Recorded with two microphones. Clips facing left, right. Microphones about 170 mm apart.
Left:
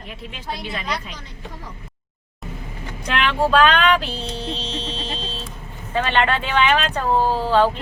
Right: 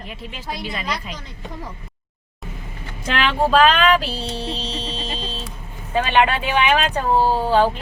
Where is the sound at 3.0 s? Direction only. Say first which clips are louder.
Right 1 dB; centre (ahead or behind).